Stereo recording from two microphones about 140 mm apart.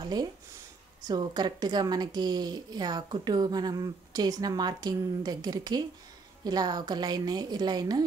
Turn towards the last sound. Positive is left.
turn(degrees=-30)  # may be behind; listen again after turning